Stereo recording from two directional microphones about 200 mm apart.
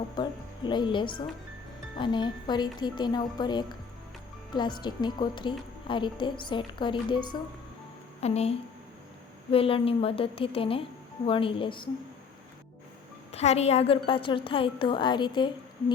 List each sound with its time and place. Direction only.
0.2 s a woman's voice: 20° left (ahead or behind)
13.3 s a woman's voice: 35° left (ahead or behind)